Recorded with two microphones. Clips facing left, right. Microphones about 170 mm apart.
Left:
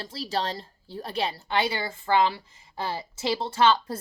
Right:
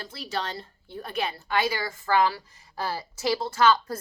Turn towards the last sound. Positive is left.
turn(degrees=30)  # may be behind; listen again after turning